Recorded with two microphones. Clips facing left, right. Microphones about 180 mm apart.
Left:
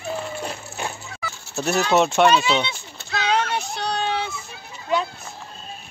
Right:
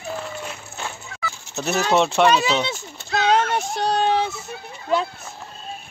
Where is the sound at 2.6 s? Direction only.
45° right (ahead or behind).